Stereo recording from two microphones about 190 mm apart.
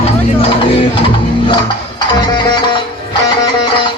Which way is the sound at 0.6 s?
25° left (ahead or behind).